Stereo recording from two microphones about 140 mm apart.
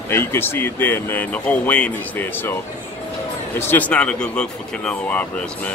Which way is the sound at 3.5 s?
15° left (ahead or behind).